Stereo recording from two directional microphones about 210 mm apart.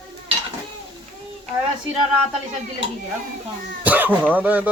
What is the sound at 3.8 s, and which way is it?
Speech, 10° right (ahead or behind).